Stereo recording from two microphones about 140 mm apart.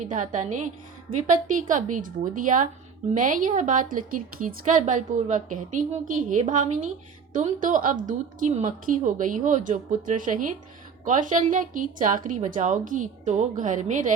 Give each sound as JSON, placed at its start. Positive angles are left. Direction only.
{"t": 0.0, "sound": "a woman's voice", "side_deg": -65}